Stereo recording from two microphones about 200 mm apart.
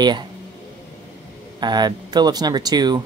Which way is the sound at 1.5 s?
20° right (ahead or behind).